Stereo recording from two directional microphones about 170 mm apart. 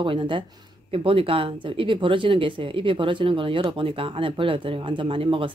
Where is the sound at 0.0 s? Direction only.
30° right (ahead or behind).